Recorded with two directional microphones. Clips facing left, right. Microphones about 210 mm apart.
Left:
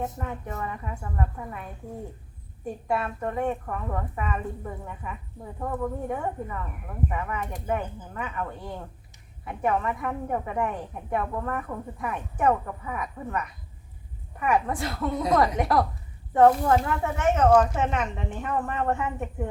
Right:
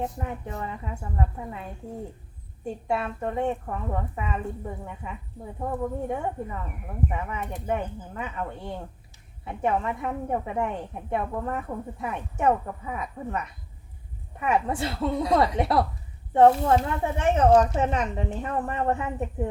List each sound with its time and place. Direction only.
0.0 s a woman's voice: 20° right (ahead or behind)
2.6 s a woman's voice: 25° right (ahead or behind)